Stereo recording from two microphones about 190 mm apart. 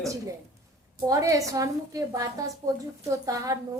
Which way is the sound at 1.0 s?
20° right (ahead or behind).